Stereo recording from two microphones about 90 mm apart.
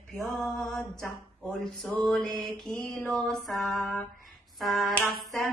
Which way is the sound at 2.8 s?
15° left (ahead or behind).